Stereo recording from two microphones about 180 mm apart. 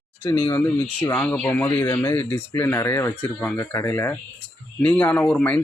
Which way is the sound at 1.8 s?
25° left (ahead or behind).